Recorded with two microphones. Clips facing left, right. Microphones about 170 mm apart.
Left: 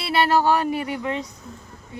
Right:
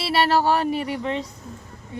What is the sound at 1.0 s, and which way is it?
Speech, 25° right (ahead or behind).